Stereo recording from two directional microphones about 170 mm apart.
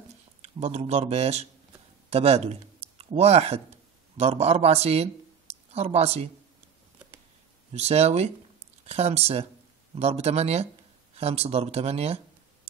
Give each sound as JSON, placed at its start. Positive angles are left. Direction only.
{"t": 0.4, "sound": "a man's voice", "side_deg": -40}
{"t": 7.7, "sound": "speech", "side_deg": -40}